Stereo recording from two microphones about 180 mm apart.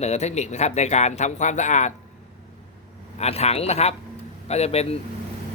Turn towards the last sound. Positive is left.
turn(degrees=35)  # may be behind; listen again after turning